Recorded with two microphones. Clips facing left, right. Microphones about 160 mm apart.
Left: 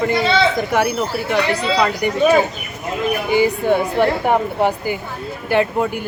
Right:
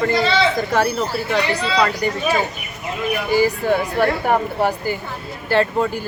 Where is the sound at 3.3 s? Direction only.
20° left (ahead or behind).